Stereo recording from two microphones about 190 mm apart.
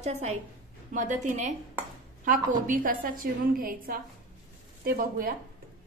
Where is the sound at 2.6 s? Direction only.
45° right (ahead or behind).